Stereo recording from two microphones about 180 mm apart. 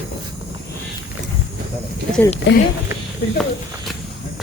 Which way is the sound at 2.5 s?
85° left.